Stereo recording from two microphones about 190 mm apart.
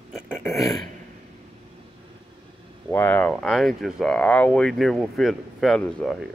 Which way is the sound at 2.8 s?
10° left (ahead or behind).